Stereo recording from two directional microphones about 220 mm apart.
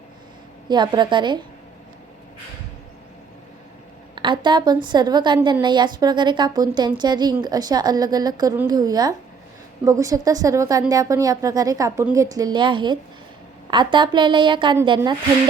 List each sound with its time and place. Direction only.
0.7 s a woman's voice: 20° right (ahead or behind)
4.1 s a woman's voice: 20° right (ahead or behind)